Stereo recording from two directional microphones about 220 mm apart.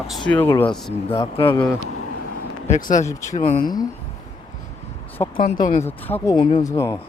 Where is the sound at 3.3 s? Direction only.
35° left (ahead or behind).